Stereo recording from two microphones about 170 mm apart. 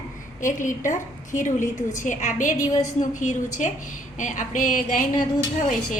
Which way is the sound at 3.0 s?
45° left (ahead or behind).